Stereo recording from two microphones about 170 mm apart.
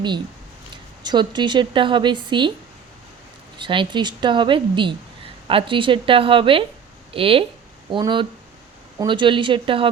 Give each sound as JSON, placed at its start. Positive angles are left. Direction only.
{"t": 1.0, "sound": "speech", "side_deg": -25}
{"t": 3.6, "sound": "a woman's voice", "side_deg": -30}